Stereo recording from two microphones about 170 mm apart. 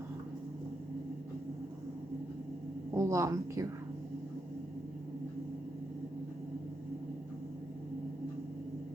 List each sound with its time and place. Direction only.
2.9 s a woman's voice: 15° right (ahead or behind)